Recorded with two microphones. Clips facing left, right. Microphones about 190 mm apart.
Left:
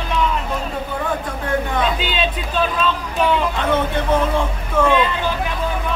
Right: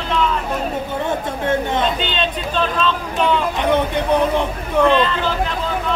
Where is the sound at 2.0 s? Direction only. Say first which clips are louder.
Even; 5° left (ahead or behind).